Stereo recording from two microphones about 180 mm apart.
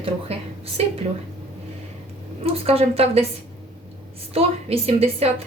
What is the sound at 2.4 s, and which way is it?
Speech, 35° right (ahead or behind).